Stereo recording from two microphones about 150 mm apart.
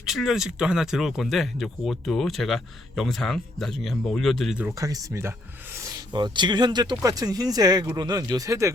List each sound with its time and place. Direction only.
0.0 s speech: centre (ahead or behind)
4.8 s speech: 20° right (ahead or behind)
5.7 s a sound: 20° right (ahead or behind)
6.1 s speech: 30° right (ahead or behind)